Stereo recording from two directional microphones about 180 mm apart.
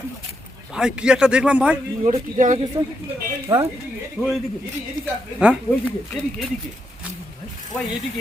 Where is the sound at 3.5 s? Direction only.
20° right (ahead or behind).